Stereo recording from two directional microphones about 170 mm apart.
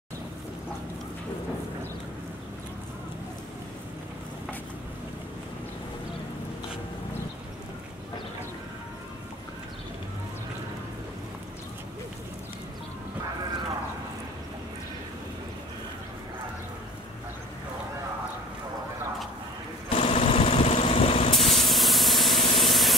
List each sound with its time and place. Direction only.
19.9 s sewing machine: 35° left (ahead or behind)
21.4 s spray: centre (ahead or behind)